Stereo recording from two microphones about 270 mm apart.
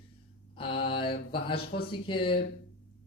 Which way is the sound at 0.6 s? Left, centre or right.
Centre.